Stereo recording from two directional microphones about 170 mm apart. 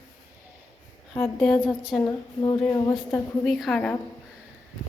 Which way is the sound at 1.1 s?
5° left (ahead or behind).